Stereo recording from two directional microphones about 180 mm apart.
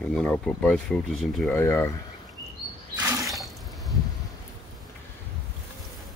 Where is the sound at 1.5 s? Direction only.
15° left (ahead or behind).